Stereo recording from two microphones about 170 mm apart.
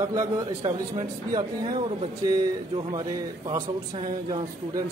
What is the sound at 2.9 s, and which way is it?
A man's voice, 25° right (ahead or behind).